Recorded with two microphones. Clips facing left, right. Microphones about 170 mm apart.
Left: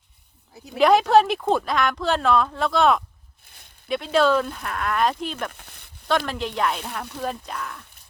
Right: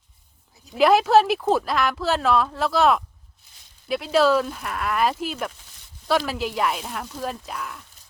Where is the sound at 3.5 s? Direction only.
60° left (ahead or behind).